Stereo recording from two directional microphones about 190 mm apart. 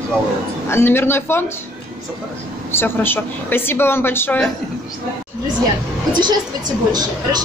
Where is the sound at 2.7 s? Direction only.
10° left (ahead or behind).